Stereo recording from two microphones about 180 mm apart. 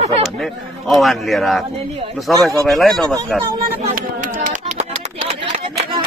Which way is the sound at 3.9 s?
45° right (ahead or behind).